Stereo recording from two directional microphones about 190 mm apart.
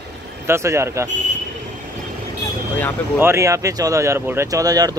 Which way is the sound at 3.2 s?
15° right (ahead or behind).